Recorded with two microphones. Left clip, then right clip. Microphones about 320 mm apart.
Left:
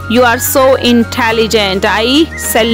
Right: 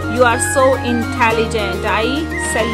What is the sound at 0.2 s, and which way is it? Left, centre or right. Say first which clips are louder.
Speech: left 4 dB; left.